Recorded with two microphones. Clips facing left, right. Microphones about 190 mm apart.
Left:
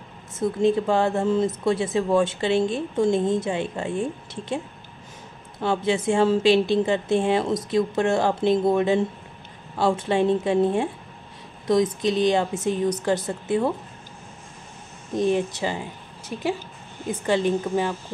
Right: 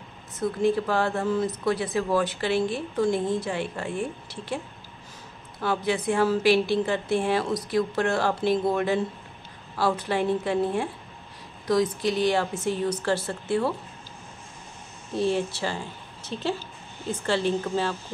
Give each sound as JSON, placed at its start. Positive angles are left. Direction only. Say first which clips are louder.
{"t": 0.4, "sound": "a woman's voice", "louder": "left 3 dB", "side_deg": 25}
{"t": 5.6, "sound": "a woman's voice", "louder": "left 3 dB", "side_deg": 25}
{"t": 15.1, "sound": "a woman's voice", "louder": "left 3 dB", "side_deg": 20}